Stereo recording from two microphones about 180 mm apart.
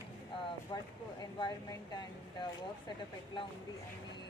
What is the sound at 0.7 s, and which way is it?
Speech, 25° left (ahead or behind).